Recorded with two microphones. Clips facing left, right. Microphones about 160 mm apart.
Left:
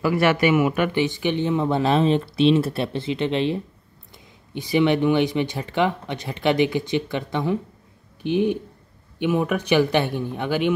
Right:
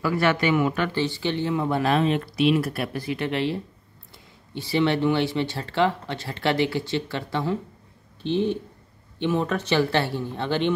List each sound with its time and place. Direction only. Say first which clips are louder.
0.0 s speech: left 3 dB; 10° left (ahead or behind)